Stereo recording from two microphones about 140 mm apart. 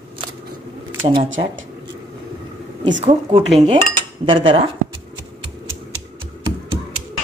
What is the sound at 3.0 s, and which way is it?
Speech, 45° right (ahead or behind).